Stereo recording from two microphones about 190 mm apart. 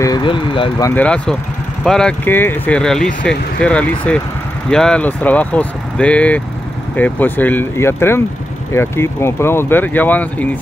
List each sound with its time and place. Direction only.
0.0 s speech: 25° left (ahead or behind)